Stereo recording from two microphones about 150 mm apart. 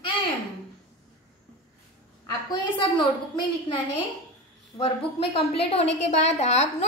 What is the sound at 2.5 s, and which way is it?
A woman's voice, 30° left (ahead or behind).